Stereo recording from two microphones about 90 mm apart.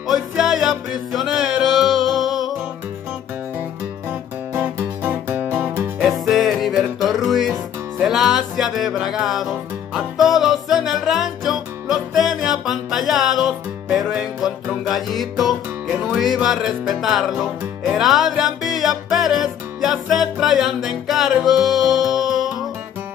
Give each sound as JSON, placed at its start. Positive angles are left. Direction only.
{"t": 0.0, "sound": "music", "side_deg": -5}
{"t": 4.6, "sound": "music", "side_deg": -25}
{"t": 6.0, "sound": "music", "side_deg": 0}